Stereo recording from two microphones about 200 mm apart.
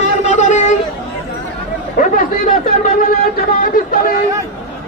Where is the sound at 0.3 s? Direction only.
35° left (ahead or behind).